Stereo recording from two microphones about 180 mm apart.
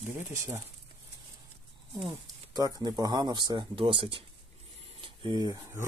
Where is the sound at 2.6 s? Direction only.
20° right (ahead or behind).